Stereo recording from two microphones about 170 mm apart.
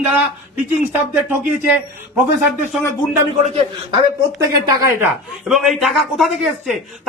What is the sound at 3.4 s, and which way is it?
Speech, 35° right (ahead or behind).